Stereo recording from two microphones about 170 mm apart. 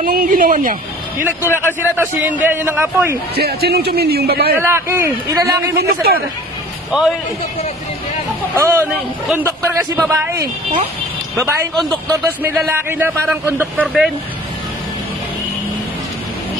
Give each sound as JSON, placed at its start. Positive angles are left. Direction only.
{"t": 0.0, "sound": "speech", "side_deg": -55}
{"t": 1.2, "sound": "a man's voice", "side_deg": -15}
{"t": 3.3, "sound": "a man's voice", "side_deg": -70}
{"t": 4.6, "sound": "a man's voice", "side_deg": -15}
{"t": 5.8, "sound": "speech", "side_deg": -65}
{"t": 6.9, "sound": "a man's voice", "side_deg": -5}
{"t": 8.5, "sound": "a man's voice", "side_deg": -15}
{"t": 11.7, "sound": "speech", "side_deg": 0}
{"t": 12.1, "sound": "a man's voice", "side_deg": -15}